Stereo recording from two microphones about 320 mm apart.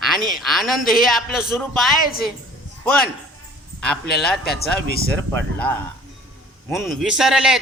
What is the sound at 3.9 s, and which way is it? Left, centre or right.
Speech, centre.